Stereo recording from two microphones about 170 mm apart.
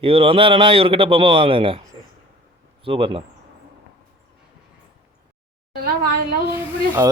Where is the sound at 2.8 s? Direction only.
30° right (ahead or behind).